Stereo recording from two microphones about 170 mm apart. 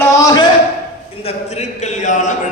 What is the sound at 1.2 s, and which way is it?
A man's voice, 40° left (ahead or behind).